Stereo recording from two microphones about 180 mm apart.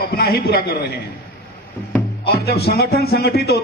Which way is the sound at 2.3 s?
60° left (ahead or behind).